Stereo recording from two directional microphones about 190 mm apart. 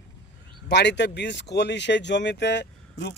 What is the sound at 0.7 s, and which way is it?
Speech, 65° left (ahead or behind).